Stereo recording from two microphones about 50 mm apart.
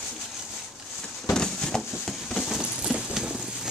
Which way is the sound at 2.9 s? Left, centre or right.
Centre.